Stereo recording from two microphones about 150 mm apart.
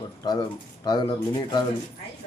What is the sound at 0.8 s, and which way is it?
Speech, 25° left (ahead or behind).